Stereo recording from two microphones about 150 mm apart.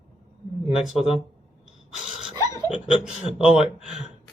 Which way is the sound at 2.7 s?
5° right (ahead or behind).